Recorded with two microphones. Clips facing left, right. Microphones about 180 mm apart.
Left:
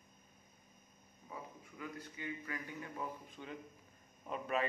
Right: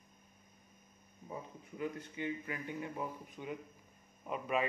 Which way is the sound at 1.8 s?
25° right (ahead or behind).